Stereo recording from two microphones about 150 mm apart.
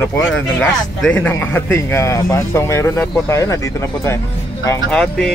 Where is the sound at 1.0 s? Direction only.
5° left (ahead or behind).